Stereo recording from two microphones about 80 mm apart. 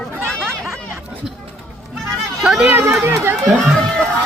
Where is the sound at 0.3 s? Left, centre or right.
Centre.